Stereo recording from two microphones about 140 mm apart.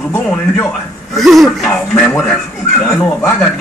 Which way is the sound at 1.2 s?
Centre (ahead or behind).